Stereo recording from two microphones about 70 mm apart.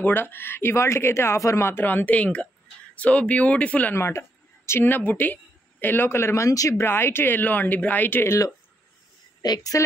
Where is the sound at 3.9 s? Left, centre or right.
Left.